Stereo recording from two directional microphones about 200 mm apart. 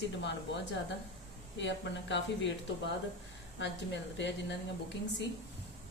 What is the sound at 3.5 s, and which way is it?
Speech, 60° left (ahead or behind).